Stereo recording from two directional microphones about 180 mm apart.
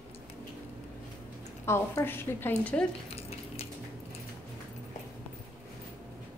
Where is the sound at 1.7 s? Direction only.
15° left (ahead or behind).